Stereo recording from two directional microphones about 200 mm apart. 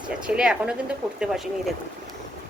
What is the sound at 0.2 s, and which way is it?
Speech, 5° right (ahead or behind).